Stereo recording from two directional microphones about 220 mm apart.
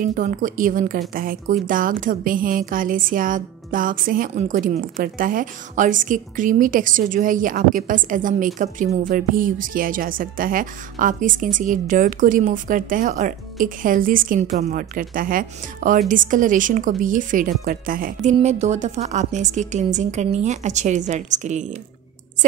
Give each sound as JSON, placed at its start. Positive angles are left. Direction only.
{"t": 0.0, "sound": "a woman's voice", "side_deg": -35}